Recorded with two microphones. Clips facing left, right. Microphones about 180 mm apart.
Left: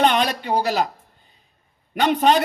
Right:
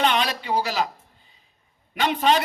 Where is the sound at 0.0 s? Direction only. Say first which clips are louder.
Left 4 dB; 45° left (ahead or behind).